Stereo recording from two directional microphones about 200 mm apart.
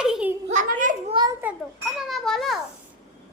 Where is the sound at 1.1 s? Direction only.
20° right (ahead or behind).